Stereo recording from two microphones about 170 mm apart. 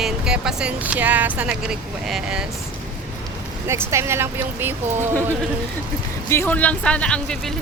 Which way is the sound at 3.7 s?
15° right (ahead or behind).